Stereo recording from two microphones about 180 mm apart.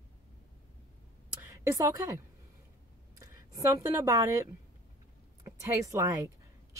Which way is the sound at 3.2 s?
15° right (ahead or behind).